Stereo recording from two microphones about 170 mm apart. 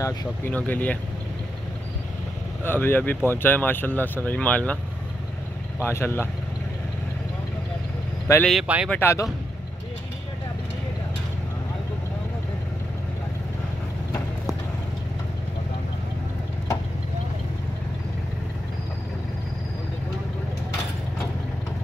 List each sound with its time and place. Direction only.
0.0 s speech: 15° left (ahead or behind)
2.6 s speech: 10° left (ahead or behind)
5.8 s speech: 15° left (ahead or behind)
8.4 s speech: centre (ahead or behind)
8.9 s speech: 15° left (ahead or behind)